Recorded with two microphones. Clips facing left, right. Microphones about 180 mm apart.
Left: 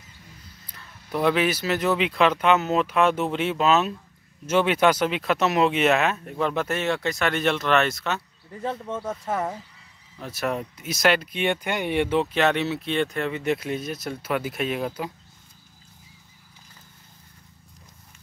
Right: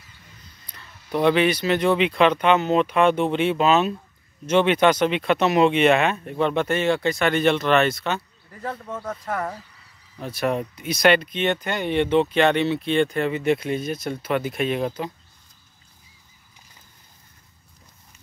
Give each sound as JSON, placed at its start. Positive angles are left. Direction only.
{"t": 0.7, "sound": "speech", "side_deg": 5}
{"t": 8.5, "sound": "speech", "side_deg": 20}
{"t": 10.2, "sound": "speech", "side_deg": 0}